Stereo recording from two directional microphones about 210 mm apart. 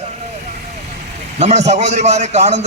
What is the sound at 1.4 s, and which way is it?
A man's voice, 30° right (ahead or behind).